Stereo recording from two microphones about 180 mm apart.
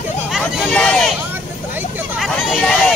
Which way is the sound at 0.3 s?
Centre (ahead or behind).